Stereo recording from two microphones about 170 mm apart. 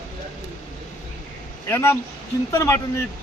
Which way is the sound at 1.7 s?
15° left (ahead or behind).